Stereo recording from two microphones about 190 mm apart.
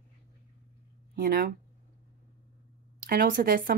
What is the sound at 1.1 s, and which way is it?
Speech, 50° right (ahead or behind).